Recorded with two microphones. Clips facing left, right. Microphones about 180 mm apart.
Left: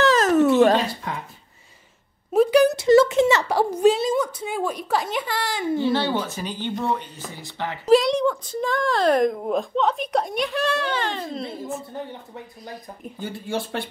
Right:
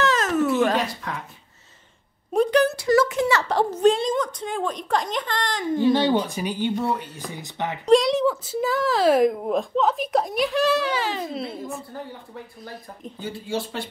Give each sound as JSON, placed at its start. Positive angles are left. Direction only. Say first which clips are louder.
{"t": 0.0, "sound": "a sound", "louder": "left 4 dB", "side_deg": 35}
{"t": 2.3, "sound": "speech", "louder": "left 3 dB", "side_deg": 5}
{"t": 2.6, "sound": "speech", "louder": "left 4 dB", "side_deg": 20}
{"t": 3.4, "sound": "a woman's voice", "louder": "left 1 dB", "side_deg": 10}
{"t": 5.8, "sound": "a woman's voice", "louder": "right 5 dB", "side_deg": -15}
{"t": 7.8, "sound": "speech", "louder": "even", "side_deg": 0}
{"t": 13.2, "sound": "speech", "louder": "even", "side_deg": 55}